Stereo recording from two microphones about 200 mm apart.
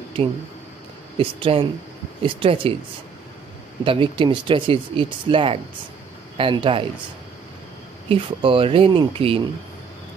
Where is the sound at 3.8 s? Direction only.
25° right (ahead or behind).